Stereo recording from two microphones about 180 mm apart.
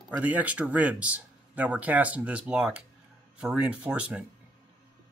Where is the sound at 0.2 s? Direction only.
10° right (ahead or behind).